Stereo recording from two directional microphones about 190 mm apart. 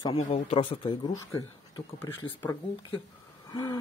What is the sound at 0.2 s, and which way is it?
Speech, 30° left (ahead or behind).